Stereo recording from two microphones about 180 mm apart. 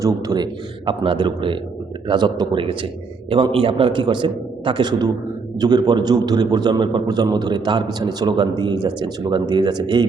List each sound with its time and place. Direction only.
0.0 s a man's voice: 20° right (ahead or behind)